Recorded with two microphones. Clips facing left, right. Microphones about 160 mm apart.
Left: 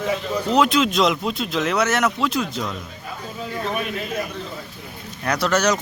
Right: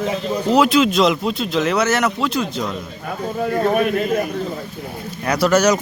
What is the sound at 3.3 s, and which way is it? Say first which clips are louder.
Speech: right 9 dB; 55° right (ahead or behind).